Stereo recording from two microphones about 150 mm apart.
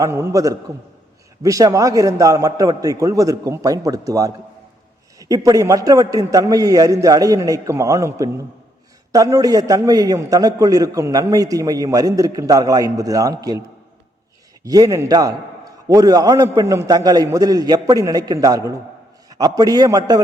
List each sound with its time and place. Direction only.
0.0 s a man's voice: 20° right (ahead or behind)
14.6 s a man's voice: 25° right (ahead or behind)